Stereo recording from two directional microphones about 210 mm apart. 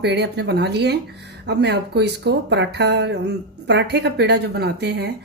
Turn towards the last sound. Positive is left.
turn(degrees=-50)  # may be behind; listen again after turning